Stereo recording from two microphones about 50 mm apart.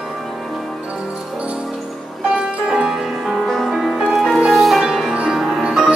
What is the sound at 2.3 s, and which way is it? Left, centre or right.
Music, centre.